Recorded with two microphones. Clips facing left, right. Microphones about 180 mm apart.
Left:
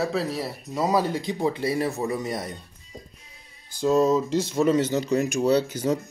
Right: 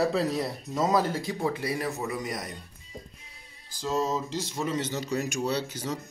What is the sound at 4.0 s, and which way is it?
Speech, 60° left (ahead or behind).